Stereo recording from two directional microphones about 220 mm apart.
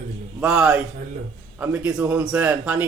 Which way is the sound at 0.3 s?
5° right (ahead or behind).